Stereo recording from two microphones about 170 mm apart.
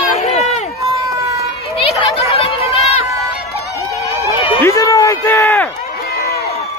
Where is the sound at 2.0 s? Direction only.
35° left (ahead or behind).